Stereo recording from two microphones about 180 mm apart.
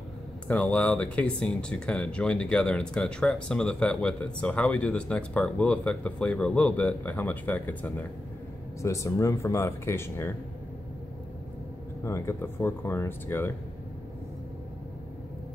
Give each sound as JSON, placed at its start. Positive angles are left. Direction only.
{"t": 0.5, "sound": "speech", "side_deg": 5}
{"t": 12.0, "sound": "speech", "side_deg": 15}